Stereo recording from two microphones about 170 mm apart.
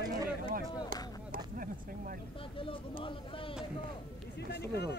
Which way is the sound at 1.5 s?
55° right (ahead or behind).